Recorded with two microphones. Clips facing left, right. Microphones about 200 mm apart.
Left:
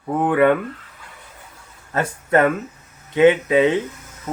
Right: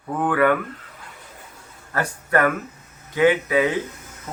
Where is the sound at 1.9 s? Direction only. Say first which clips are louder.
Left 3 dB; 25° left (ahead or behind).